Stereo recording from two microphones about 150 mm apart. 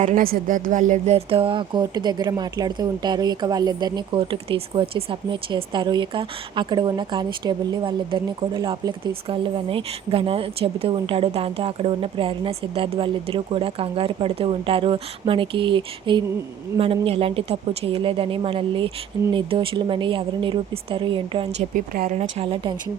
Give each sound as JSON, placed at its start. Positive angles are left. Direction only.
{"t": 0.0, "sound": "speech", "side_deg": -65}
{"t": 22.1, "sound": "a woman's voice", "side_deg": -50}
{"t": 22.4, "sound": "speech", "side_deg": -35}